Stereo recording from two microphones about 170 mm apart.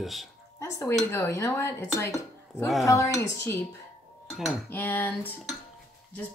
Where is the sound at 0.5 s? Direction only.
20° left (ahead or behind).